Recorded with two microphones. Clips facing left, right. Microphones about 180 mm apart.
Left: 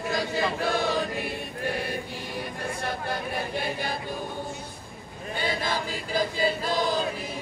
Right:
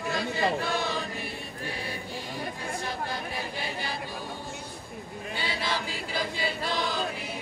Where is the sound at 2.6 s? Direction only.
60° left (ahead or behind).